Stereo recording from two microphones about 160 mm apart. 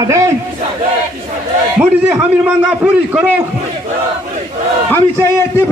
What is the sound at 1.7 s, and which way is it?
A man's voice, 5° right (ahead or behind).